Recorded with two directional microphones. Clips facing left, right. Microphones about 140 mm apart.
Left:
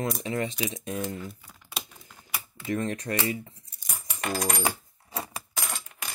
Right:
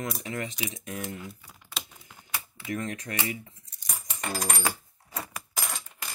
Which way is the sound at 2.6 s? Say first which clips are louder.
Left 4 dB; 30° left (ahead or behind).